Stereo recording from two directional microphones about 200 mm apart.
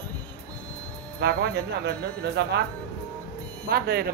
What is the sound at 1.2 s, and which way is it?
Speech, 55° right (ahead or behind).